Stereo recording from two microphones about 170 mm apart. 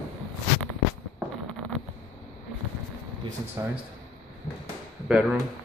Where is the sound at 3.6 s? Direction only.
15° right (ahead or behind).